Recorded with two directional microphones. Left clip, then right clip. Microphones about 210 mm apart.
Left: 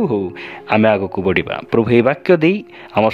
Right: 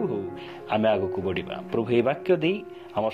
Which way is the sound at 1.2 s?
90° left.